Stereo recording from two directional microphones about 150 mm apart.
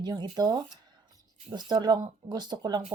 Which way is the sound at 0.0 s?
30° right (ahead or behind).